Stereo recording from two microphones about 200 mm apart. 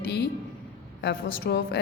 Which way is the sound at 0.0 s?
55° left (ahead or behind).